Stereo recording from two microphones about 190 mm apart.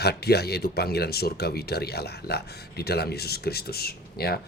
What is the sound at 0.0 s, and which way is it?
Speech, 55° left (ahead or behind).